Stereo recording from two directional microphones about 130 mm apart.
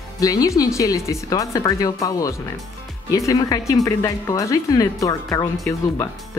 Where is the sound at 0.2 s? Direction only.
25° left (ahead or behind).